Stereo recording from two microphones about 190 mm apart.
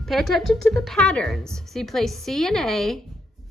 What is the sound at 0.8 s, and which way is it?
Speech, 5° left (ahead or behind).